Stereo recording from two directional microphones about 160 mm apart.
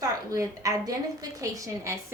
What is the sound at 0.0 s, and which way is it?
A woman's voice, 20° right (ahead or behind).